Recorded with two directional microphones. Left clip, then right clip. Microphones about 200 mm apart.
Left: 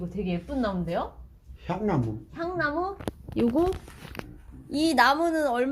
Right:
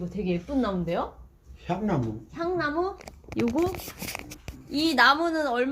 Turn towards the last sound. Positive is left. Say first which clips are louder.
# left 1 dB
turn(degrees=20)  # may be behind; listen again after turning